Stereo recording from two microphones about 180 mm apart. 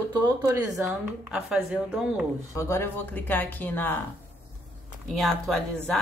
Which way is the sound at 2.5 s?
15° left (ahead or behind).